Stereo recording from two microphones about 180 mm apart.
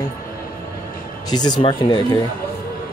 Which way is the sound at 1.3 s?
25° left (ahead or behind).